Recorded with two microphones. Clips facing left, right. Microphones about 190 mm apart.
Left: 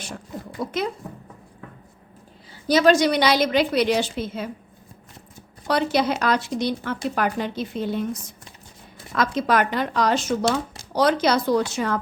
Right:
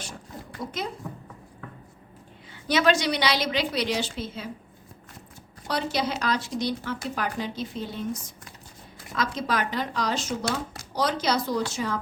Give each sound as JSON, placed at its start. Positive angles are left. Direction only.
{"t": 0.6, "sound": "speech", "side_deg": 70}
{"t": 2.6, "sound": "a woman's voice", "side_deg": 40}
{"t": 5.6, "sound": "speech", "side_deg": 60}
{"t": 9.1, "sound": "speech", "side_deg": 60}